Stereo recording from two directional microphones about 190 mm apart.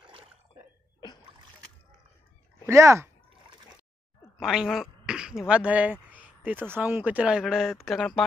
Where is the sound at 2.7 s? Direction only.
15° right (ahead or behind).